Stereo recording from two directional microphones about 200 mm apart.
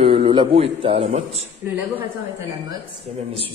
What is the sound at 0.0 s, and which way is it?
A man's voice, 30° right (ahead or behind).